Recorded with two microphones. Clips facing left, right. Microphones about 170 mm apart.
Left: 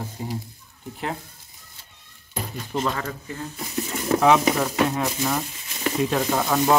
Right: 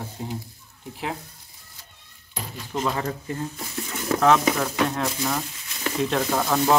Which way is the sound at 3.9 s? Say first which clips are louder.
Left 1 dB; 10° left (ahead or behind).